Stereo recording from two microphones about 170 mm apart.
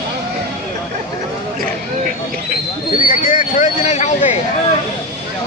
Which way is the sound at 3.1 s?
55° left (ahead or behind).